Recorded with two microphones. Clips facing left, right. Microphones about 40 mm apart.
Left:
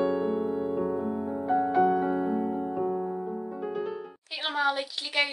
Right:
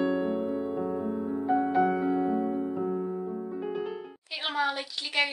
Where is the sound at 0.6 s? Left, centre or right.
Centre.